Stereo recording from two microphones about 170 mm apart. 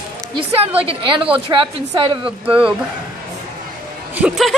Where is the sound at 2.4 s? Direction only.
5° right (ahead or behind).